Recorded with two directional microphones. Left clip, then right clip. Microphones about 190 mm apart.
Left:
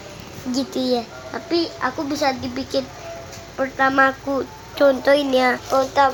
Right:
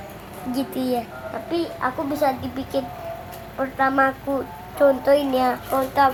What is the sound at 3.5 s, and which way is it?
Child singing, 40° left (ahead or behind).